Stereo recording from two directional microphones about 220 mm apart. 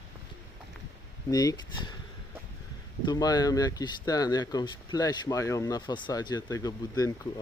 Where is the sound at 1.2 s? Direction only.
15° left (ahead or behind).